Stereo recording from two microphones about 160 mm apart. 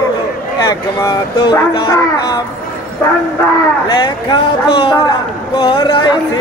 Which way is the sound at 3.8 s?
25° left (ahead or behind).